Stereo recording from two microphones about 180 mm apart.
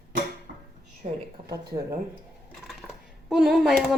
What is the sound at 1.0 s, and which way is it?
Speech, 40° right (ahead or behind).